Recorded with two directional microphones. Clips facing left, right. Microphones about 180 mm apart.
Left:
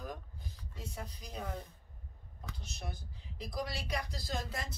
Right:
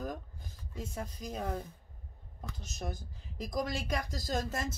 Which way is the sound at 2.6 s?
45° right (ahead or behind).